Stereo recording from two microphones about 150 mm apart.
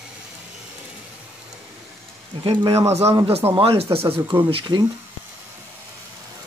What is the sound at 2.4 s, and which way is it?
Speech, 35° right (ahead or behind).